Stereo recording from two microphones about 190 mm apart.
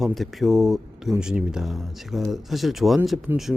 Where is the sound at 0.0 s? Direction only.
Centre (ahead or behind).